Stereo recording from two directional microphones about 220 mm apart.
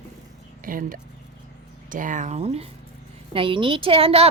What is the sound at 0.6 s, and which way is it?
A woman's voice, 40° right (ahead or behind).